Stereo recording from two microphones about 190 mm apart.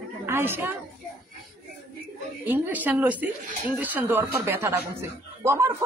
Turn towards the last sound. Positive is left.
turn(degrees=-15)  # may be behind; listen again after turning